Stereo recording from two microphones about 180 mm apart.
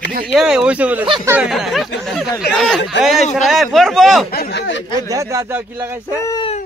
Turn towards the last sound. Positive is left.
turn(degrees=-15)  # may be behind; listen again after turning